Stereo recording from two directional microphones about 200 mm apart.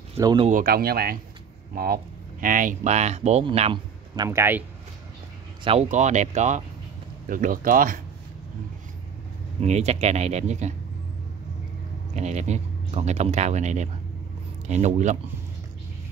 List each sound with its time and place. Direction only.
0.2 s speech: 20° right (ahead or behind)
0.5 s speech: 45° right (ahead or behind); by 3.8 s 30° right (ahead or behind)
4.1 s speech: 15° right (ahead or behind)
5.6 s speech: 30° right (ahead or behind)
9.6 s speech: 35° right (ahead or behind)
12.1 s speech: 35° right (ahead or behind)